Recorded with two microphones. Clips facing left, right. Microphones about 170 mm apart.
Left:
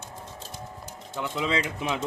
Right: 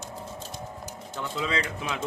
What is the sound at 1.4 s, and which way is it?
Speech, 20° left (ahead or behind).